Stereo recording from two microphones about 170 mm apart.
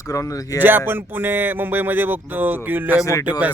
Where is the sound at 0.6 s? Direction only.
10° right (ahead or behind).